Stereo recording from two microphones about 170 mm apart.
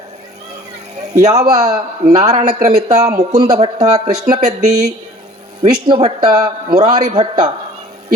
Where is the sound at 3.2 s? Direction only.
20° right (ahead or behind).